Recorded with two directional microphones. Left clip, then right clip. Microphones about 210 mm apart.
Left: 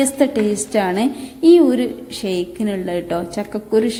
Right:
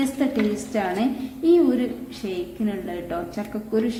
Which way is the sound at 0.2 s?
30° left (ahead or behind).